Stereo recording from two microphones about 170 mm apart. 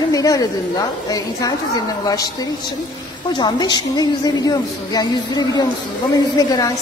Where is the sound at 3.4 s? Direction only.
25° left (ahead or behind).